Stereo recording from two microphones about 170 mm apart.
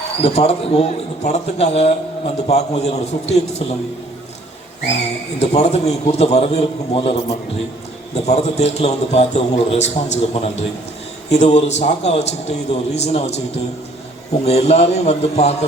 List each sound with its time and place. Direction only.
0.2 s a man's voice: 35° left (ahead or behind)
5.4 s a man's voice: 40° left (ahead or behind)
14.4 s a man's voice: 40° left (ahead or behind)